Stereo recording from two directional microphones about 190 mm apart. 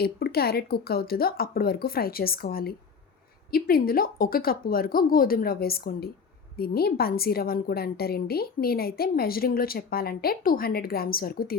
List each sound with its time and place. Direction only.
0.0 s a woman's voice: 55° left (ahead or behind)